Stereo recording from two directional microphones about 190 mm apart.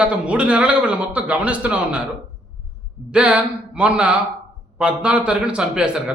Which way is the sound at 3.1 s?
5° right (ahead or behind).